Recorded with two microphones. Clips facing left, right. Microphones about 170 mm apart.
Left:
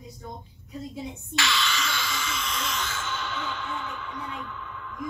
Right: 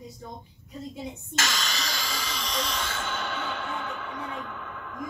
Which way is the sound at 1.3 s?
40° right (ahead or behind).